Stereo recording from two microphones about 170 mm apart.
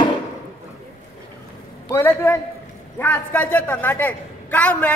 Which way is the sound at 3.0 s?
10° left (ahead or behind).